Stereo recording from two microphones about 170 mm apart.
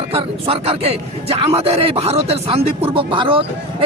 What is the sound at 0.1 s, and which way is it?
Speech, 35° right (ahead or behind).